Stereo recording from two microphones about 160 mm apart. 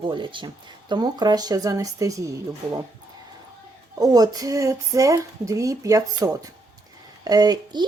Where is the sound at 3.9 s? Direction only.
25° right (ahead or behind).